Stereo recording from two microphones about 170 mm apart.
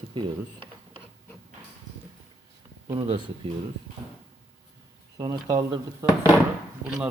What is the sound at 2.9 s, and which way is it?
Speech, 25° right (ahead or behind).